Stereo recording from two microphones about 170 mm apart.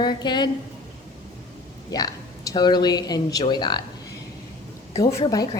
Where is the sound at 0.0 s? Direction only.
25° left (ahead or behind).